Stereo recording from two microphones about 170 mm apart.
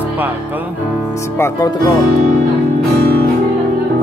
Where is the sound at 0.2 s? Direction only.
10° right (ahead or behind).